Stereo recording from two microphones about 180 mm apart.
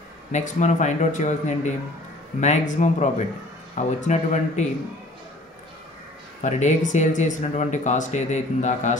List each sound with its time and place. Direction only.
0.3 s speech: 40° left (ahead or behind)
6.4 s speech: 40° left (ahead or behind)